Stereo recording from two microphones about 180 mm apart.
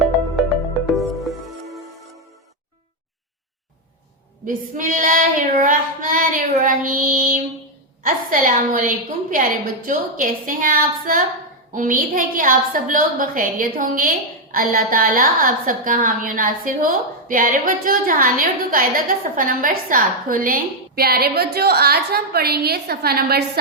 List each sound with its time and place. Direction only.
0.9 s music: centre (ahead or behind)
4.4 s a woman's voice: 50° right (ahead or behind)